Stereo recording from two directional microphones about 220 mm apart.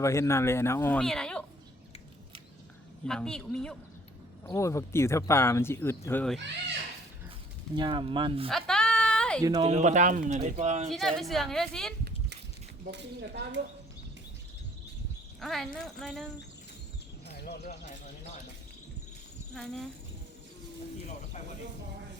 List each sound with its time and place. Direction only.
0.0 s speech: 15° left (ahead or behind)
3.1 s speech: 5° left (ahead or behind)
7.8 s speech: 20° right (ahead or behind)
8.4 s a sound: centre (ahead or behind)
9.6 s speech: 30° right (ahead or behind)
10.9 s speech: centre (ahead or behind)
12.9 s speech: 50° right (ahead or behind)
15.4 s speech: centre (ahead or behind)
17.4 s speech: 45° left (ahead or behind)